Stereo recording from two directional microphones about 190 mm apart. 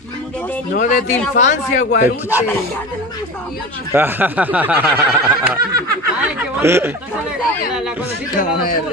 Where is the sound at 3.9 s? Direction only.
10° right (ahead or behind).